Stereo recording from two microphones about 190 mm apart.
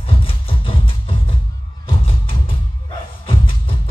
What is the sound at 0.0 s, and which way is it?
Music, 30° left (ahead or behind).